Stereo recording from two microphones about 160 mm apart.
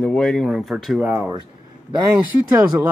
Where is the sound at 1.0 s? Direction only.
15° right (ahead or behind).